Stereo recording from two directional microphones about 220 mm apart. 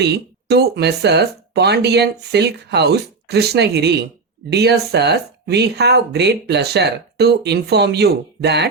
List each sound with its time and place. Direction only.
0.0 s speech: 50° right (ahead or behind)